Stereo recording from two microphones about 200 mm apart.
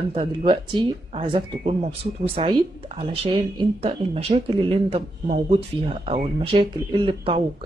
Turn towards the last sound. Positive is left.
turn(degrees=-25)  # may be behind; listen again after turning